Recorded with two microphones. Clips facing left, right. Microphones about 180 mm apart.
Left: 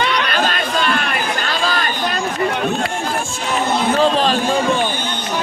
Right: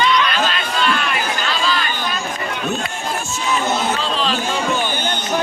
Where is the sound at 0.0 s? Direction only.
60° left (ahead or behind); by 1.9 s 45° left (ahead or behind).